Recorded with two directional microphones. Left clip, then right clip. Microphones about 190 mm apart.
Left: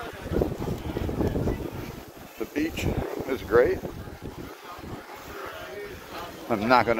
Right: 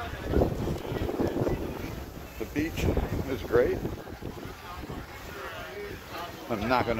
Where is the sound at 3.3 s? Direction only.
30° left (ahead or behind).